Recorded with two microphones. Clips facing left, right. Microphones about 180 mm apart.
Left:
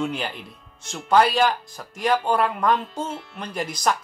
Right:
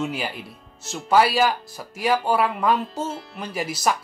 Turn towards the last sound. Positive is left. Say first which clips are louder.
# even
turn(degrees=-5)  # may be behind; listen again after turning